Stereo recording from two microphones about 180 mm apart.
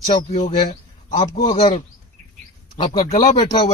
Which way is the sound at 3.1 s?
40° left (ahead or behind).